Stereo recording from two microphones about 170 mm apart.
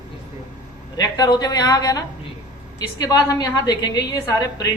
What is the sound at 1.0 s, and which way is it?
A woman's voice, 25° left (ahead or behind).